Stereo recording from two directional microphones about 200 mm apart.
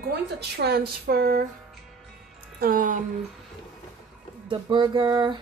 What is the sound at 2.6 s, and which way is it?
Speech, 45° right (ahead or behind).